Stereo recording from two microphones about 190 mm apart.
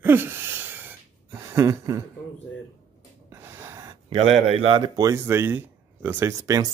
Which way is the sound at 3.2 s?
15° right (ahead or behind).